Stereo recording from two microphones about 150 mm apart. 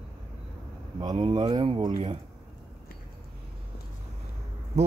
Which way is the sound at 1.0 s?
30° right (ahead or behind).